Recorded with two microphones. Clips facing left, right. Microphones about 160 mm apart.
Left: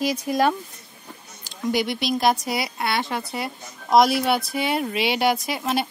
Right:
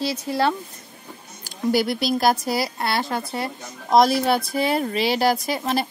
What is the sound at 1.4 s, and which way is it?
Speech, 5° right (ahead or behind).